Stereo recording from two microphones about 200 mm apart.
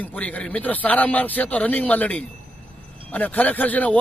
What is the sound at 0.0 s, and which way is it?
A man's voice, 5° left (ahead or behind).